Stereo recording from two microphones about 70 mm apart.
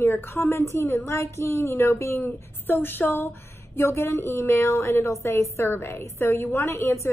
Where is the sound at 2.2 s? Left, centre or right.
Left.